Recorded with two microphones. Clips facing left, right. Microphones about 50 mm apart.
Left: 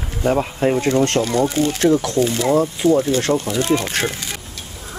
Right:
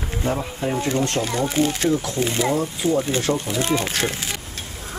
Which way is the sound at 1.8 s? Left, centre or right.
Left.